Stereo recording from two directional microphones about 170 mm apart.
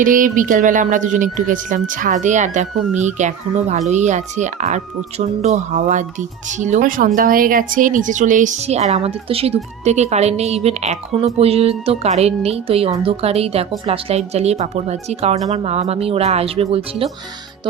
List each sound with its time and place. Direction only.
0.0 s a woman's voice: 50° right (ahead or behind); by 17.1 s 35° right (ahead or behind)